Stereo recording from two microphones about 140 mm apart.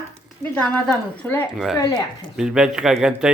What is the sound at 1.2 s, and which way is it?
Speech, 10° left (ahead or behind).